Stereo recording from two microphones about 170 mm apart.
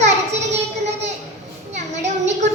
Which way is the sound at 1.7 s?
40° right (ahead or behind).